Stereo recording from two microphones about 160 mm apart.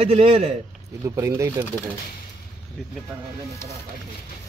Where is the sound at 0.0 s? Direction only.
35° right (ahead or behind).